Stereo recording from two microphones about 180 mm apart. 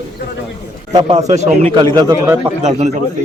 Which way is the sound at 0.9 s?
35° right (ahead or behind).